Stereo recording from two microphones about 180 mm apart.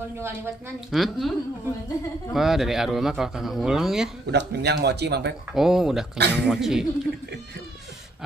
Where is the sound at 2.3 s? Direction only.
Centre (ahead or behind).